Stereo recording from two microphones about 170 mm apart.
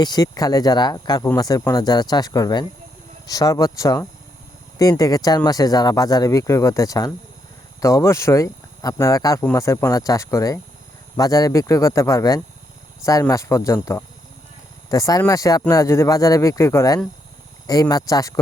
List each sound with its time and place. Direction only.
0.0 s speech: 25° left (ahead or behind)